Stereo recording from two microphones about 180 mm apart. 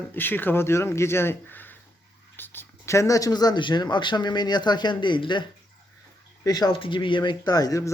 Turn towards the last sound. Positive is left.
turn(degrees=20)  # may be behind; listen again after turning